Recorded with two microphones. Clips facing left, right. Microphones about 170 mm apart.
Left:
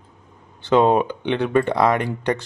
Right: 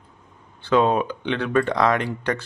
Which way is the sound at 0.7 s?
20° left (ahead or behind).